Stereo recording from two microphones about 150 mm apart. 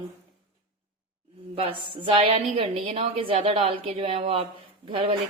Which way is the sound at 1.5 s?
35° right (ahead or behind).